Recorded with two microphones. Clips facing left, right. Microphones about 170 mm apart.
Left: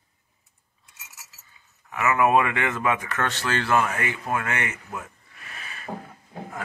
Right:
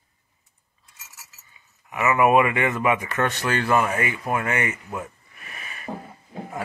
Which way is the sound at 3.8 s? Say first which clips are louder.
Right 3 dB; 10° right (ahead or behind).